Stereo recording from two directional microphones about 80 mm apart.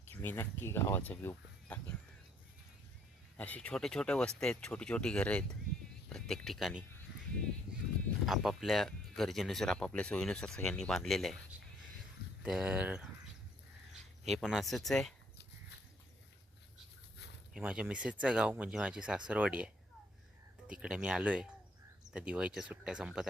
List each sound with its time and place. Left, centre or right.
0.1 s speech: left
1.6 s a sound: centre
3.3 s speech: centre
8.3 s speech: centre
12.4 s speech: centre
14.4 s speech: centre
17.6 s speech: centre